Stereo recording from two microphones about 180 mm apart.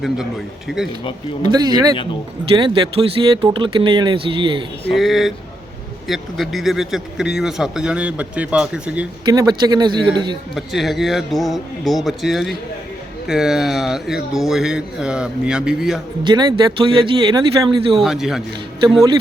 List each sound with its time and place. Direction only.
0.7 s speech: centre (ahead or behind)
1.5 s speech: 20° right (ahead or behind)
4.9 s speech: centre (ahead or behind)
9.2 s speech: 20° right (ahead or behind)
10.5 s speech: centre (ahead or behind)
16.2 s speech: 25° right (ahead or behind)
18.0 s speech: centre (ahead or behind)